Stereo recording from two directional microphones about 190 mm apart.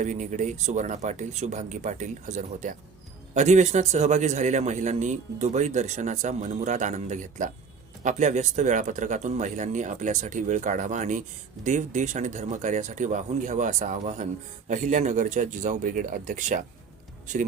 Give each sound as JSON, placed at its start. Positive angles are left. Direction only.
{"t": 0.0, "sound": "a man's voice", "side_deg": -40}